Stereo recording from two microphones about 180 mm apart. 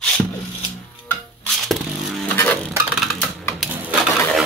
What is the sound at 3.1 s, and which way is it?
Music, 5° left (ahead or behind).